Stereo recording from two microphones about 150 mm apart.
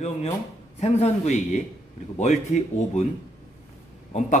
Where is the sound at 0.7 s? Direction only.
45° left (ahead or behind).